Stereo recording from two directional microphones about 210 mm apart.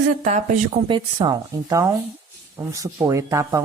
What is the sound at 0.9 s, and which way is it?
Speech, 20° right (ahead or behind).